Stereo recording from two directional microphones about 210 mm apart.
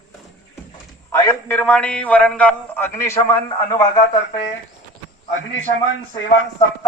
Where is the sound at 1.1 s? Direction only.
15° left (ahead or behind).